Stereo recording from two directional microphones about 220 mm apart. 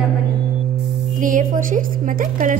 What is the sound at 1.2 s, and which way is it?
Speech, 35° right (ahead or behind).